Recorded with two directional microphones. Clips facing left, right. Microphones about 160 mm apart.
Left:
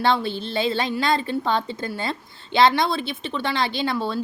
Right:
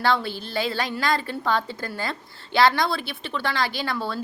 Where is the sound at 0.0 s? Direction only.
25° left (ahead or behind).